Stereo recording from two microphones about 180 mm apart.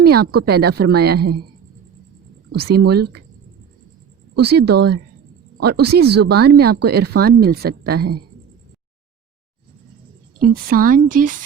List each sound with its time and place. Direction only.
0.1 s speech: 60° right (ahead or behind)
2.5 s speech: 60° right (ahead or behind)
4.4 s speech: 65° right (ahead or behind)
10.4 s a woman's voice: 50° right (ahead or behind)